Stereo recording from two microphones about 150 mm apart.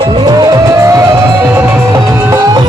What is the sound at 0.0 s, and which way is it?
Music, 30° right (ahead or behind).